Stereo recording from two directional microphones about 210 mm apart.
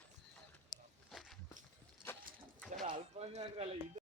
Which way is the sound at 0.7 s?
Centre (ahead or behind).